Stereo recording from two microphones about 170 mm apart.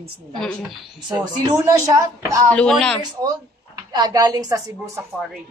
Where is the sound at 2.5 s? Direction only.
5° left (ahead or behind).